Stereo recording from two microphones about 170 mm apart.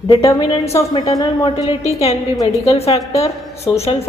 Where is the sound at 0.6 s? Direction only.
20° left (ahead or behind).